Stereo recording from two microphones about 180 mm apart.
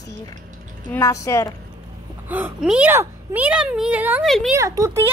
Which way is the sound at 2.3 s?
10° right (ahead or behind).